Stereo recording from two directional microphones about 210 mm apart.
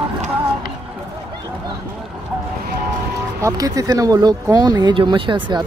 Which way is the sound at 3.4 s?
15° right (ahead or behind).